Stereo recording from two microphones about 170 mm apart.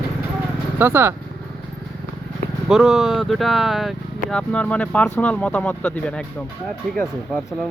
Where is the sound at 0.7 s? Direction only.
15° right (ahead or behind).